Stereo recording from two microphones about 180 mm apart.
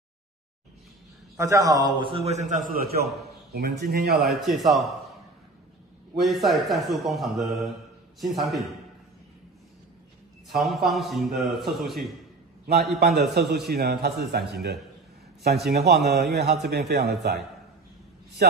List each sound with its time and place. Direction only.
1.3 s a man's voice: 15° right (ahead or behind)
2.0 s a man's voice: 30° right (ahead or behind); by 4.2 s 60° right (ahead or behind)
4.2 s a man's voice: centre (ahead or behind)
6.1 s a man's voice: centre (ahead or behind)
10.5 s a man's voice: centre (ahead or behind)
13.0 s a man's voice: 65° right (ahead or behind)
18.4 s a man's voice: 60° right (ahead or behind)